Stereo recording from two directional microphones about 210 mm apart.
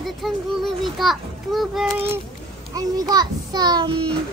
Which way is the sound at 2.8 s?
15° right (ahead or behind).